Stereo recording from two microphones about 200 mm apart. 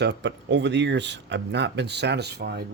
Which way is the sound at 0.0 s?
60° right (ahead or behind).